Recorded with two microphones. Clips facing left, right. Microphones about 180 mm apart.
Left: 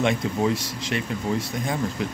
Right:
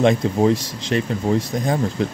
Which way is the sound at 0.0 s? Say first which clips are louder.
Right 6 dB; 35° right (ahead or behind).